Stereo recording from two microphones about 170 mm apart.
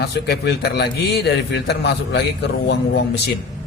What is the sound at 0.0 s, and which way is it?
A man's voice, 70° left (ahead or behind).